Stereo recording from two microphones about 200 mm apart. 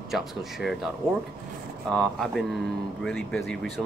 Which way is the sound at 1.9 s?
Centre (ahead or behind).